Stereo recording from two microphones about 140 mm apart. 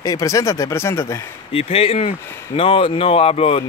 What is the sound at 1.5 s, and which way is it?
A man's voice, 45° left (ahead or behind).